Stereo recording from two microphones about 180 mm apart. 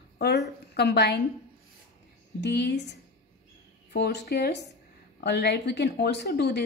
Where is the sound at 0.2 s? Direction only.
70° left (ahead or behind).